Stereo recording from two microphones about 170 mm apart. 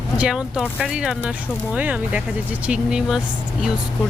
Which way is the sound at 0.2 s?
5° right (ahead or behind).